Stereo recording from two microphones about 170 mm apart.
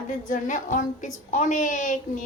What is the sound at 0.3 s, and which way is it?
A woman's voice, 50° left (ahead or behind).